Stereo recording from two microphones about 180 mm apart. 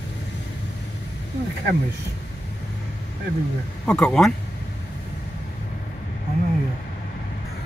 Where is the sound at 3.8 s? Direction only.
5° left (ahead or behind).